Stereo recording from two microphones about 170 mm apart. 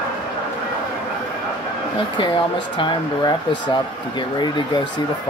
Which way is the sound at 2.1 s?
30° left (ahead or behind).